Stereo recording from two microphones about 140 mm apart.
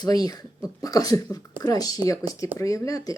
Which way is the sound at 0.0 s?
25° left (ahead or behind).